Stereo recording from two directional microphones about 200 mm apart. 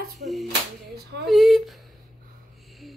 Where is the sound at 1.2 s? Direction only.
Centre (ahead or behind).